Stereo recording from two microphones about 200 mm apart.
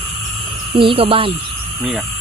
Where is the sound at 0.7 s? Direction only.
25° right (ahead or behind).